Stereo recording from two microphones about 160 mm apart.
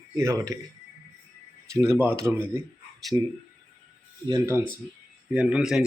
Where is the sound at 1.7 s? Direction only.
15° right (ahead or behind).